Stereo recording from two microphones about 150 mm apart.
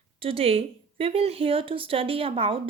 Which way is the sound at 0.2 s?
40° right (ahead or behind).